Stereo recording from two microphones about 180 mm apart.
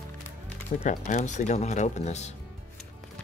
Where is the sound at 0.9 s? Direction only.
45° left (ahead or behind).